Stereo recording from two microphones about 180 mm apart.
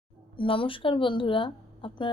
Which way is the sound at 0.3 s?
30° left (ahead or behind).